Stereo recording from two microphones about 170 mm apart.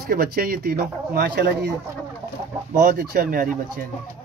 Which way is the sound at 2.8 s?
55° right (ahead or behind).